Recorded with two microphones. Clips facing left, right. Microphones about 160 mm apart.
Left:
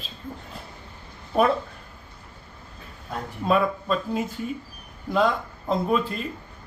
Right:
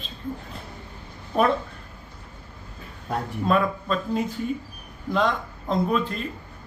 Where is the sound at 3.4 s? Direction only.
5° left (ahead or behind).